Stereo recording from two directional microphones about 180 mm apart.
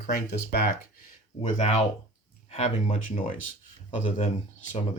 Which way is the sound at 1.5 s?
35° left (ahead or behind).